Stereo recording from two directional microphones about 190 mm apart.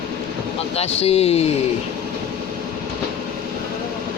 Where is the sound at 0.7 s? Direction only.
35° left (ahead or behind).